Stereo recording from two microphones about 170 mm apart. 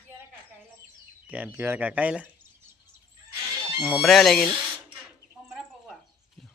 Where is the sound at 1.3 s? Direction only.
10° right (ahead or behind).